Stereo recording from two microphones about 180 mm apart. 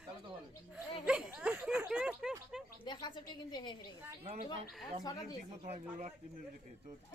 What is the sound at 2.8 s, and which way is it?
Speech, 25° left (ahead or behind).